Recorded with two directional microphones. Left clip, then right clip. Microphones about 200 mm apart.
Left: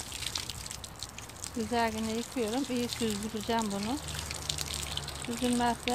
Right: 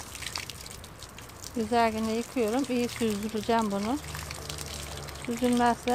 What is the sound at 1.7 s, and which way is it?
Speech, 35° right (ahead or behind).